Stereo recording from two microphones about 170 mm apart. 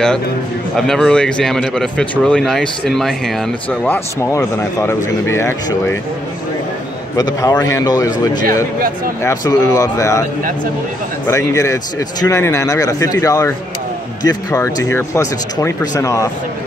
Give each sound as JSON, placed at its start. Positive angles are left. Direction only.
{"t": 0.7, "sound": "speech", "side_deg": 5}
{"t": 7.2, "sound": "speech", "side_deg": 25}
{"t": 9.2, "sound": "speech", "side_deg": 20}
{"t": 11.2, "sound": "speech", "side_deg": 15}